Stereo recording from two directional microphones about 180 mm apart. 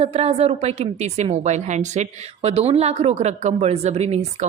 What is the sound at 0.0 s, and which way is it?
A woman's voice, 35° right (ahead or behind).